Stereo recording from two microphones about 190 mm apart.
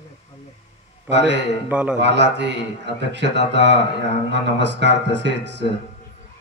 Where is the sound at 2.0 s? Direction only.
65° right (ahead or behind).